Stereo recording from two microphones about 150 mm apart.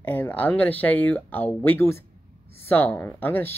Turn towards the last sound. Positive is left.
turn(degrees=10)  # may be behind; listen again after turning